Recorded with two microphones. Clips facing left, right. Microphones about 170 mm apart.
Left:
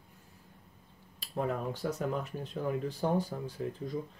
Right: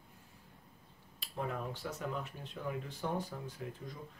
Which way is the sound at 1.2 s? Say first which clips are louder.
Left 6 dB; 40° left (ahead or behind).